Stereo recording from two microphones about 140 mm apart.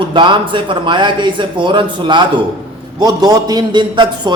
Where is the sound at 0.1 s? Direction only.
35° right (ahead or behind).